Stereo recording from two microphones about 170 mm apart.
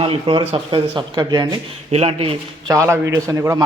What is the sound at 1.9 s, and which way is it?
Speech, 40° right (ahead or behind).